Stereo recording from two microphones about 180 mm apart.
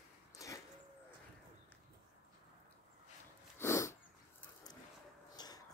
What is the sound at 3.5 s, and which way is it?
Dog, 15° left (ahead or behind).